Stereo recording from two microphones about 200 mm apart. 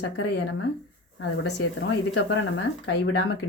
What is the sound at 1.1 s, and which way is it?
Speech, 65° left (ahead or behind).